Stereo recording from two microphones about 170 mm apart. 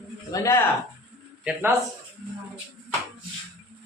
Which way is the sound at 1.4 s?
10° right (ahead or behind).